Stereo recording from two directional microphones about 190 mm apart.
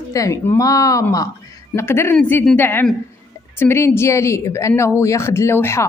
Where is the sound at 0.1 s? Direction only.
15° left (ahead or behind).